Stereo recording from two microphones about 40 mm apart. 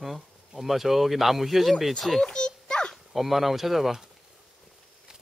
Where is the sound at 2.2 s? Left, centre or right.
Left.